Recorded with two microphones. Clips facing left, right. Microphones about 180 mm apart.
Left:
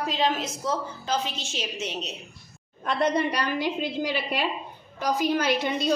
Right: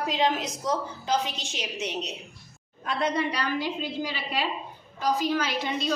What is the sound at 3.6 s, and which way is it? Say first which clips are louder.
Speech: left 3 dB; 60° left (ahead or behind).